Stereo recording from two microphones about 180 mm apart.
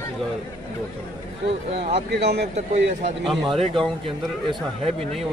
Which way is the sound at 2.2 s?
70° right (ahead or behind).